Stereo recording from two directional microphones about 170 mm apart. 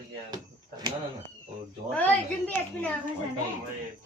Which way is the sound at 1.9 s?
10° left (ahead or behind).